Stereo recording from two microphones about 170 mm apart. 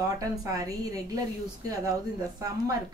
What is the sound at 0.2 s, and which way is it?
Speech, 20° right (ahead or behind).